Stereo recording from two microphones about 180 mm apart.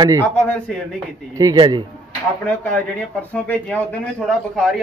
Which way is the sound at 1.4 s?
20° right (ahead or behind).